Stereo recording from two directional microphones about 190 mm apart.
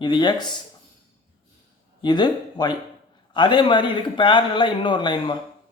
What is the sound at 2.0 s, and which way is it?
Speech, 25° left (ahead or behind).